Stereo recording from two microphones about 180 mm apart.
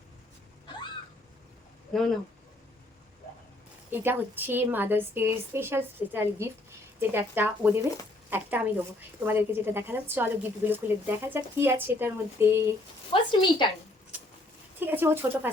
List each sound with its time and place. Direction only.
1.9 s speech: centre (ahead or behind)
3.9 s a woman's voice: 10° right (ahead or behind)
13.1 s a woman's voice: 25° left (ahead or behind)
14.1 s dog: 10° right (ahead or behind)
14.8 s a woman's voice: 10° right (ahead or behind)